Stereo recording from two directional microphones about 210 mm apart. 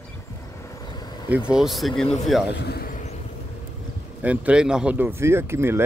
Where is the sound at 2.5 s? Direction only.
50° left (ahead or behind).